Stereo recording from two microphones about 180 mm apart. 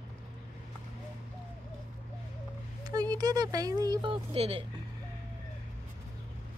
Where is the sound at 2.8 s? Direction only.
20° right (ahead or behind).